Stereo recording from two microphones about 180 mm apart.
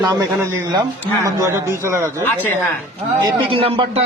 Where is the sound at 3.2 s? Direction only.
30° right (ahead or behind).